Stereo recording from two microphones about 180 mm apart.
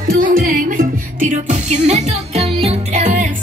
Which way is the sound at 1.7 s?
35° right (ahead or behind).